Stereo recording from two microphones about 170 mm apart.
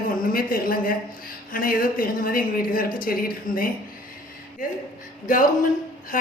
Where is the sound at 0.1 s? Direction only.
55° left (ahead or behind).